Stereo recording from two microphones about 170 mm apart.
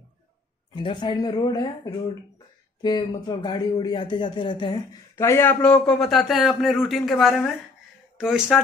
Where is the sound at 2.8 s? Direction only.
25° left (ahead or behind).